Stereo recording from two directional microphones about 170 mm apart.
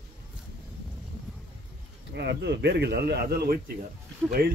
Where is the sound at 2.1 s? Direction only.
85° right.